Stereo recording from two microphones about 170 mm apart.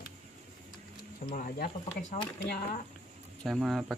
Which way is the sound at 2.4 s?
70° left (ahead or behind).